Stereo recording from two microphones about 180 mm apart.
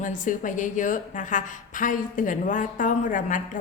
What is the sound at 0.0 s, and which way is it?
A woman's voice, 45° left (ahead or behind).